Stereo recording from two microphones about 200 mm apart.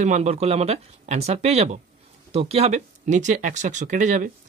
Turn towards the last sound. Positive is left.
turn(degrees=-40)  # may be behind; listen again after turning